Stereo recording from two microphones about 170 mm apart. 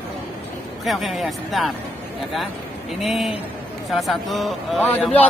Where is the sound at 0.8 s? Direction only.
Centre (ahead or behind).